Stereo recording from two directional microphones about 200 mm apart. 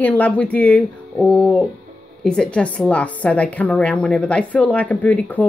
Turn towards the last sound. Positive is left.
turn(degrees=10)  # may be behind; listen again after turning